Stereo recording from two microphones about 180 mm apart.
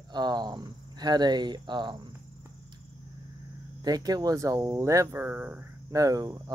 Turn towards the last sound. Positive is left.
turn(degrees=-20)  # may be behind; listen again after turning